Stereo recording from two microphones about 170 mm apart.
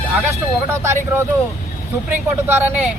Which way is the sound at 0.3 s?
15° right (ahead or behind).